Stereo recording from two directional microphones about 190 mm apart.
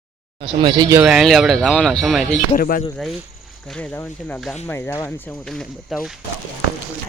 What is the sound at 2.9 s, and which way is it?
Speech, centre (ahead or behind).